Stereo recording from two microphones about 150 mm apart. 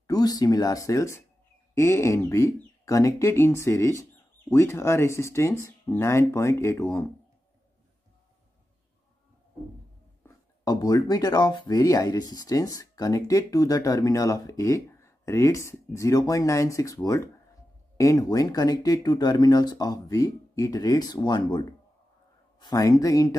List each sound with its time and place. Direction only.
0.0 s speech: 25° left (ahead or behind)
10.6 s speech: 25° left (ahead or behind)